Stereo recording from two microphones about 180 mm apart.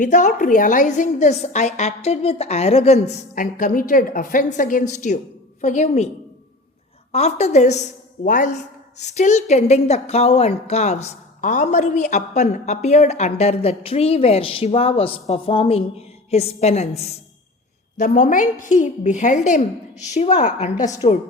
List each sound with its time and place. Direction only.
0.0 s a woman's voice: 45° left (ahead or behind)
7.1 s a woman's voice: 35° left (ahead or behind)
17.9 s a woman's voice: 45° left (ahead or behind)